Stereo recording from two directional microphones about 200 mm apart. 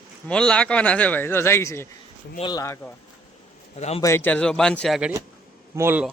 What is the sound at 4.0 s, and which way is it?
A man's voice, 15° left (ahead or behind).